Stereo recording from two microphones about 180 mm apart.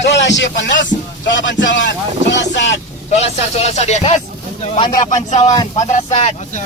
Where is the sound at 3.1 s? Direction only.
35° left (ahead or behind).